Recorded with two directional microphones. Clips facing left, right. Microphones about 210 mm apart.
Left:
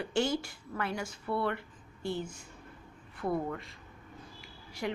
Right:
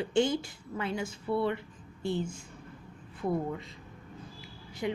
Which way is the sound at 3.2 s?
20° right (ahead or behind).